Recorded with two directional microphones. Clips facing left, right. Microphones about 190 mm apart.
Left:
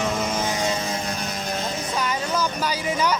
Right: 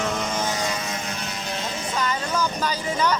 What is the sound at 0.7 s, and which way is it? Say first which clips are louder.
Vehicle: left 3 dB; 30° left (ahead or behind).